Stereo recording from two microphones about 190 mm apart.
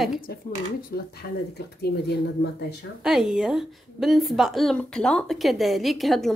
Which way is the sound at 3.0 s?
5° right (ahead or behind).